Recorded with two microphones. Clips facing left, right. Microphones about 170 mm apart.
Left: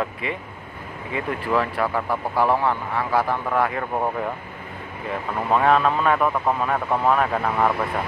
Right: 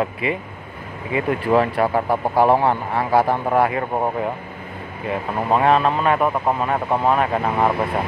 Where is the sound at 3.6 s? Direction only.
15° right (ahead or behind).